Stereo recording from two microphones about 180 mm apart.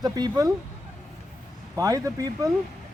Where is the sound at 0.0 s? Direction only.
20° right (ahead or behind).